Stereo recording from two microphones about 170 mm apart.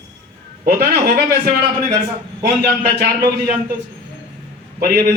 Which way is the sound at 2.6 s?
70° right (ahead or behind).